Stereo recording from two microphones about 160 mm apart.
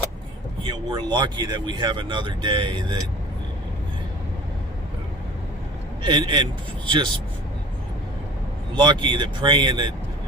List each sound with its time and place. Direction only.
0.6 s speech: 30° right (ahead or behind)
6.0 s speech: 30° right (ahead or behind)
8.8 s speech: 30° right (ahead or behind)